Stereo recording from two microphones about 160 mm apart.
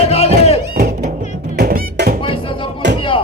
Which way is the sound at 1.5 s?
75° right (ahead or behind).